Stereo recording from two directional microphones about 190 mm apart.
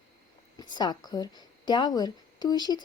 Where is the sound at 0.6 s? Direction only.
20° left (ahead or behind).